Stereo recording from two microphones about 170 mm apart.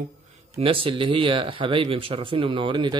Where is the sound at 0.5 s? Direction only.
30° right (ahead or behind).